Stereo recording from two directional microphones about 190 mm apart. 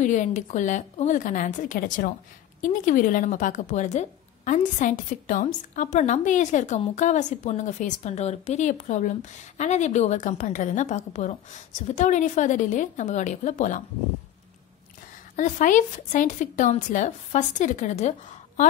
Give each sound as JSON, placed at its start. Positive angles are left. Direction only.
{"t": 0.0, "sound": "a woman's voice", "side_deg": 40}
{"t": 15.3, "sound": "a woman's voice", "side_deg": 40}